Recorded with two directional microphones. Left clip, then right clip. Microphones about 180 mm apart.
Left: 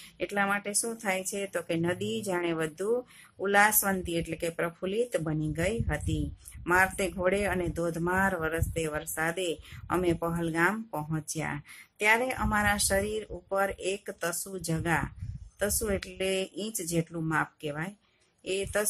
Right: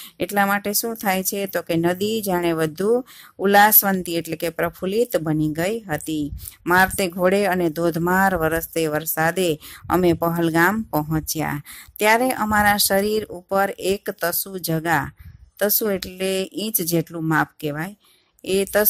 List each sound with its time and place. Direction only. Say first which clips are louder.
0.2 s speech: right 9 dB; 45° right (ahead or behind)